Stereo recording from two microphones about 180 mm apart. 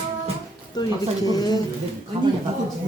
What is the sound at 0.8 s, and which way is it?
Speech, 20° left (ahead or behind).